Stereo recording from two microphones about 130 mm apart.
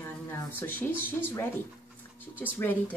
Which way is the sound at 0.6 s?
15° left (ahead or behind).